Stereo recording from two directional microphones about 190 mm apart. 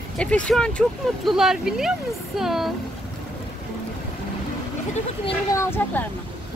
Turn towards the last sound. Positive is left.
turn(degrees=15)  # may be behind; listen again after turning